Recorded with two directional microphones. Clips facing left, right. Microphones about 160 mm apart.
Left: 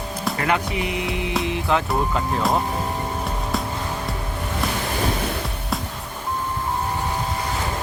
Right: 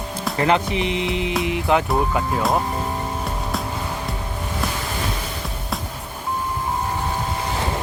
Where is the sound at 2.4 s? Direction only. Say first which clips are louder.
Even; centre (ahead or behind).